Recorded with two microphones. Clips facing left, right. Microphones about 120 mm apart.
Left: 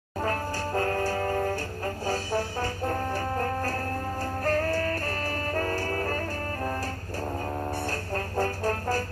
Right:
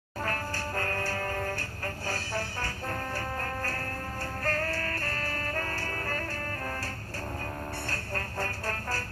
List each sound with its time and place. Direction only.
0.2 s music: 20° left (ahead or behind)
7.9 s music: 20° left (ahead or behind)